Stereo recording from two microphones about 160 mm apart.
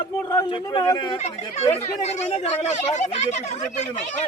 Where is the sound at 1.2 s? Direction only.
45° left (ahead or behind).